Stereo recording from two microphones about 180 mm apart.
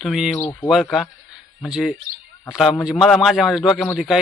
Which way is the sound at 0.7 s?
Centre (ahead or behind).